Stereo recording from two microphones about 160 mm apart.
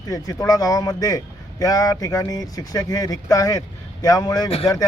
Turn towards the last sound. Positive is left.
turn(degrees=20)  # may be behind; listen again after turning